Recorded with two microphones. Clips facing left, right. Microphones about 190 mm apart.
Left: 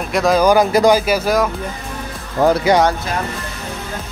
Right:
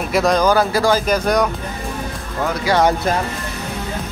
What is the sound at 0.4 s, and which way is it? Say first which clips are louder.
Speech: left 3 dB; 15° left (ahead or behind).